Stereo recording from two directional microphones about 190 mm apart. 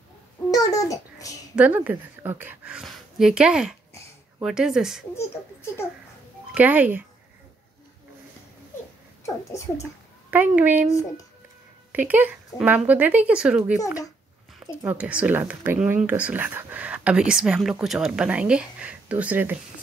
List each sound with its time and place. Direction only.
0.5 s babbling: 15° left (ahead or behind)
1.5 s speech: 5° right (ahead or behind)
5.1 s speech: 15° left (ahead or behind)
6.5 s speech: 10° right (ahead or behind)
9.2 s speech: 15° left (ahead or behind)
10.3 s speech: 10° right (ahead or behind)
11.9 s speech: 10° right (ahead or behind)
14.8 s speech: 10° right (ahead or behind)